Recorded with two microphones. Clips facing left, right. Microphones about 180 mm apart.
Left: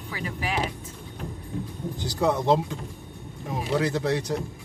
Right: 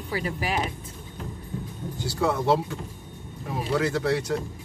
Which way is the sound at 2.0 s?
15° left (ahead or behind).